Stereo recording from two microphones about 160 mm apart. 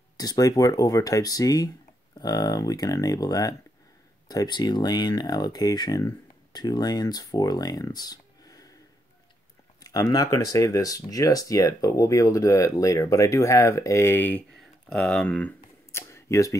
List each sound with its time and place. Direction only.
0.2 s speech: 20° left (ahead or behind)
9.8 s speech: 20° left (ahead or behind)
15.9 s a sound: 15° left (ahead or behind)